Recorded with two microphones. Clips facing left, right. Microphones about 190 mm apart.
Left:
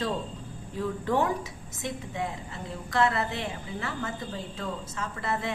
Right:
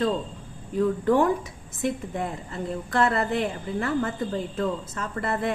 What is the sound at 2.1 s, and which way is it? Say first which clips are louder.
Speech: right 4 dB; 50° right (ahead or behind).